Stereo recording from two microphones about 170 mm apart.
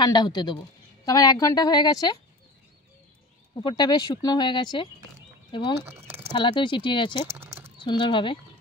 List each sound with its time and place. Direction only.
0.0 s speech: 25° left (ahead or behind)
3.5 s speech: 25° left (ahead or behind)
5.9 s speech: 15° right (ahead or behind)
6.3 s speech: 30° left (ahead or behind)
7.2 s a sound: 15° right (ahead or behind)
7.8 s speech: 30° left (ahead or behind)